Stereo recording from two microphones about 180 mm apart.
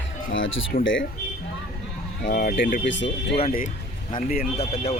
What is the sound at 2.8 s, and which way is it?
Speech, 85° left.